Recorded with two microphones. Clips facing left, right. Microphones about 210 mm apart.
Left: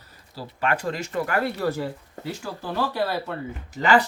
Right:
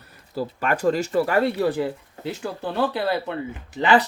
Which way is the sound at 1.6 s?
15° right (ahead or behind).